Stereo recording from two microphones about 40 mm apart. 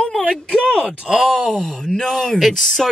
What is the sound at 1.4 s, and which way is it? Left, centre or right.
Speech, centre.